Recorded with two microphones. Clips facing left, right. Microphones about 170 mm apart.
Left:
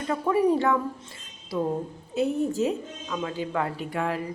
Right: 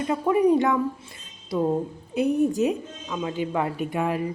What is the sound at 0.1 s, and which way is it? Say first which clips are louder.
Speech: right 2 dB; 20° right (ahead or behind).